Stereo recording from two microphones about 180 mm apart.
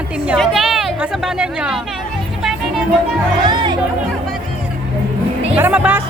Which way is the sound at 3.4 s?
25° right (ahead or behind).